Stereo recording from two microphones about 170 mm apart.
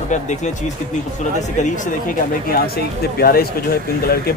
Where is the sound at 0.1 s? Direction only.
45° left (ahead or behind).